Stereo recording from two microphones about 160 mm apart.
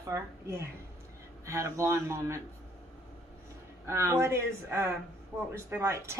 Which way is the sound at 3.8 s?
15° right (ahead or behind).